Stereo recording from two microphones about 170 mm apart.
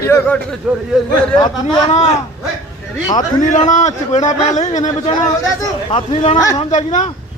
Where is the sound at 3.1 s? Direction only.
50° left (ahead or behind).